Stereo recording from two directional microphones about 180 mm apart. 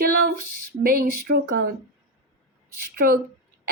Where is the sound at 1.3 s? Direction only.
60° right (ahead or behind).